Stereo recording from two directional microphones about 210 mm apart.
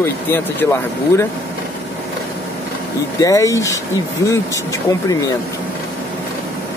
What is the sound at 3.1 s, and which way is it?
Speech, 15° left (ahead or behind).